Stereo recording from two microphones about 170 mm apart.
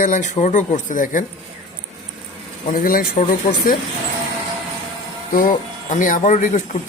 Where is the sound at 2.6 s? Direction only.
60° left (ahead or behind).